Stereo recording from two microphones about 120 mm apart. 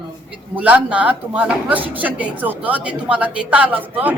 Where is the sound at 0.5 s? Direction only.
10° right (ahead or behind).